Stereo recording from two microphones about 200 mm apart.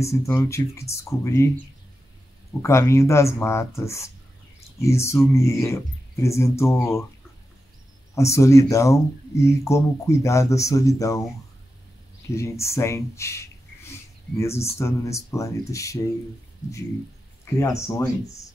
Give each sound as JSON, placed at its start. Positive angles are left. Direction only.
{"t": 0.0, "sound": "speech", "side_deg": 15}
{"t": 2.6, "sound": "speech", "side_deg": 15}
{"t": 8.1, "sound": "speech", "side_deg": 15}
{"t": 12.4, "sound": "speech", "side_deg": 15}
{"t": 17.6, "sound": "speech", "side_deg": 15}